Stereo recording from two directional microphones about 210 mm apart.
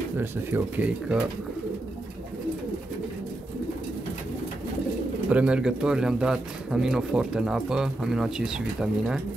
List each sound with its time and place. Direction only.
0.2 s speech: 10° right (ahead or behind)
5.3 s speech: 5° right (ahead or behind)